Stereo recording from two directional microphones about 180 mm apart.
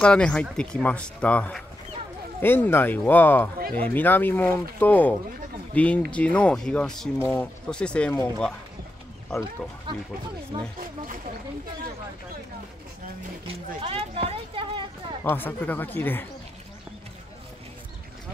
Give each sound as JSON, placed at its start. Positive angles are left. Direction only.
{"t": 0.0, "sound": "speech", "side_deg": 5}
{"t": 9.9, "sound": "speech", "side_deg": -25}
{"t": 13.7, "sound": "speech", "side_deg": -30}
{"t": 15.2, "sound": "speech", "side_deg": 10}